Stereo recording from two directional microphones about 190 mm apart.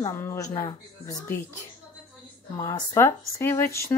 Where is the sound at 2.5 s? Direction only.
20° left (ahead or behind).